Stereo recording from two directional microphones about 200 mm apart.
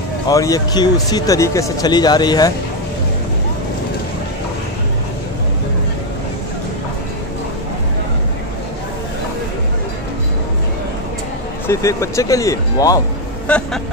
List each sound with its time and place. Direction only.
0.3 s speech: 15° left (ahead or behind)
11.6 s speech: 15° left (ahead or behind)